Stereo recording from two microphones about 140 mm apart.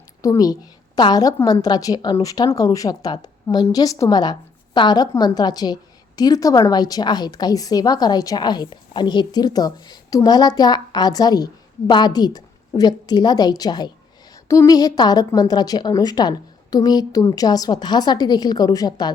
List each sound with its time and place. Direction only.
0.2 s a woman's voice: 25° left (ahead or behind)